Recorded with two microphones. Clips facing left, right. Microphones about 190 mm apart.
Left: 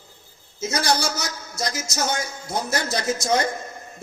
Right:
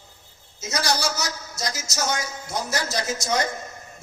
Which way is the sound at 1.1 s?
55° left (ahead or behind).